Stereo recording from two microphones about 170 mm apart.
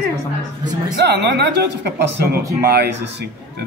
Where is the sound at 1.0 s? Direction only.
80° right.